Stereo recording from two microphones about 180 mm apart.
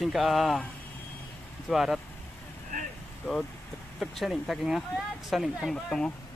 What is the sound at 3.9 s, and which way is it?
Speech, centre (ahead or behind).